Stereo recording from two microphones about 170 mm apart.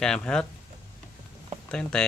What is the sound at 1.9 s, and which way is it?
Speech, 5° left (ahead or behind).